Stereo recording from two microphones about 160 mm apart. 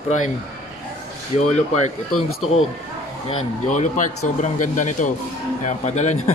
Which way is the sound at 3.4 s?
50° left (ahead or behind).